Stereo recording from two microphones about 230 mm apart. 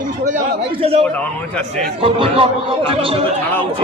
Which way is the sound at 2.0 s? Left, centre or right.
Right.